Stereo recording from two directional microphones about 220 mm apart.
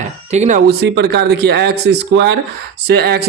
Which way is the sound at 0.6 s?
50° right (ahead or behind).